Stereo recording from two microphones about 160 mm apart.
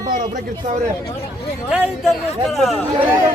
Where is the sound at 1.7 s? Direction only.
5° right (ahead or behind).